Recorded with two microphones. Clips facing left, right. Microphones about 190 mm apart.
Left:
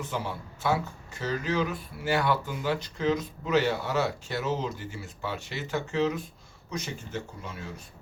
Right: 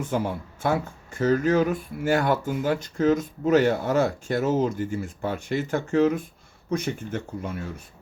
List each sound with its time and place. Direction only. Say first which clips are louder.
0.0 s speech: right 7 dB; 50° right (ahead or behind)